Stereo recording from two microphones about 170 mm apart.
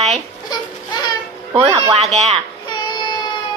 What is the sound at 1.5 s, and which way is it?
Speech, 20° right (ahead or behind).